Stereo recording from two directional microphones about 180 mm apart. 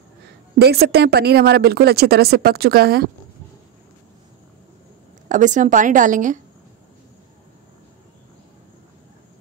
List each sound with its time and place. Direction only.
0.6 s a woman's voice: 65° right (ahead or behind)
5.3 s a woman's voice: 45° right (ahead or behind)